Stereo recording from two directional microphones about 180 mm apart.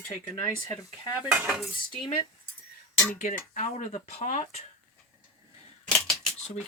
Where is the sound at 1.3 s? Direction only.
5° right (ahead or behind).